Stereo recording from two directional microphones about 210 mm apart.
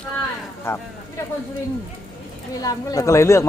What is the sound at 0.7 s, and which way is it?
Speech, 10° left (ahead or behind).